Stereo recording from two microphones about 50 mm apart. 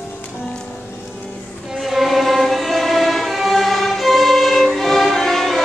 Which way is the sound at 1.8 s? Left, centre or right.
Centre.